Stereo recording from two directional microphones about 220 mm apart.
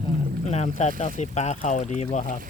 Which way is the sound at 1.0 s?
30° left (ahead or behind).